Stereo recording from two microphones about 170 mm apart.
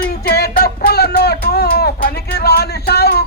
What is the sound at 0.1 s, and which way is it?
Music, 70° left (ahead or behind).